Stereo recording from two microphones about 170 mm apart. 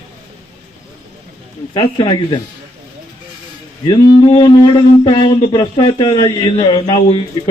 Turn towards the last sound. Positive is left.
turn(degrees=30)  # may be behind; listen again after turning